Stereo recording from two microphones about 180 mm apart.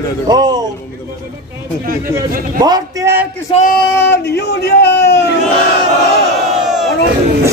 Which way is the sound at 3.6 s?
55° left (ahead or behind).